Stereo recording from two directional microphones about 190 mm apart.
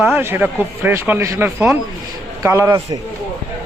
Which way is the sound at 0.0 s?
10° right (ahead or behind).